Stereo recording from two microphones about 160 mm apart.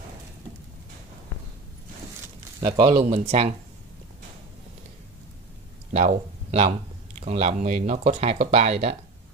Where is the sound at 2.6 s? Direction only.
30° right (ahead or behind).